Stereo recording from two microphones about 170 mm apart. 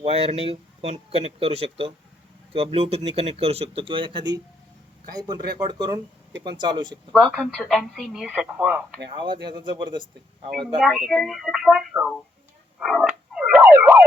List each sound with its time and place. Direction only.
0.0 s speech: 35° right (ahead or behind)
7.1 s speech: centre (ahead or behind)
9.1 s speech: 30° right (ahead or behind)
10.8 s speech: centre (ahead or behind)
12.8 s a sound: centre (ahead or behind)